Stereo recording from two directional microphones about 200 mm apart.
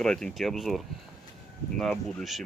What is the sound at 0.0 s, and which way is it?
Speech, 5° left (ahead or behind).